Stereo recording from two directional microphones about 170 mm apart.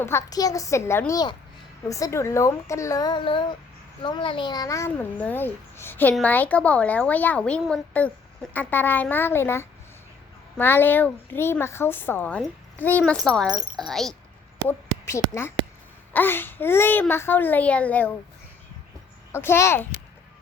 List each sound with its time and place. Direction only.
0.0 s speech: 15° left (ahead or behind)
4.9 s a child's voice: 10° left (ahead or behind)
14.7 s a woman's voice: 15° left (ahead or behind)
19.3 s a child's voice: 15° left (ahead or behind)